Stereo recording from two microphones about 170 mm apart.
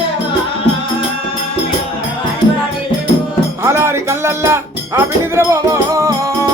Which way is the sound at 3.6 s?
15° right (ahead or behind).